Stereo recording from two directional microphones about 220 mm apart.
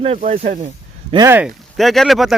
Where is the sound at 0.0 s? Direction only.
30° right (ahead or behind).